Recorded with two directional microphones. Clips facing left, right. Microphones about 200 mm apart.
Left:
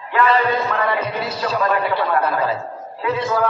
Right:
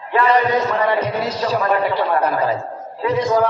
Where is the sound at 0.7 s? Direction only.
20° right (ahead or behind).